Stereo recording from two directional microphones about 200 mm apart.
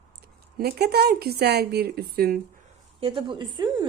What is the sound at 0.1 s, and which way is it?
Speech, 50° right (ahead or behind).